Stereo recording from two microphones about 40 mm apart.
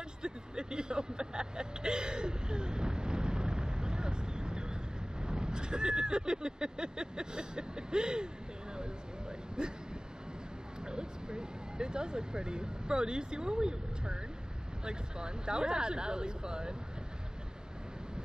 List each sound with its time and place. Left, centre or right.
0.2 s vehicle: right
9.6 s speech: right
10.8 s a sound: right
14.9 s speech: right